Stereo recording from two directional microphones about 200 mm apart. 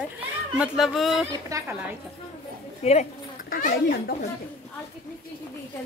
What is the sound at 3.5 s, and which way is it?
Speech, 50° left (ahead or behind).